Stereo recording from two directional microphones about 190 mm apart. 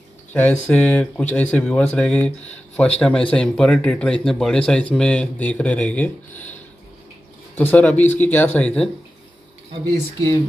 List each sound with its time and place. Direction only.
0.3 s speech: 10° left (ahead or behind)